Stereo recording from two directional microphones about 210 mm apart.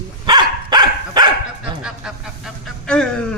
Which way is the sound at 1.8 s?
Centre (ahead or behind).